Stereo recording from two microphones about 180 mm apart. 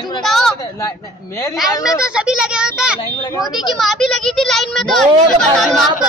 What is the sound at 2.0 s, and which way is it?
A child's voice, 5° right (ahead or behind).